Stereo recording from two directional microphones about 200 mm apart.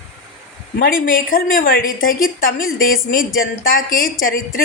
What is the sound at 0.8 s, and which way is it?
A woman's voice, 45° left (ahead or behind).